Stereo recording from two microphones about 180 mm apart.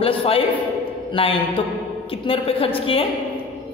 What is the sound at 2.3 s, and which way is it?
Speech, 30° left (ahead or behind).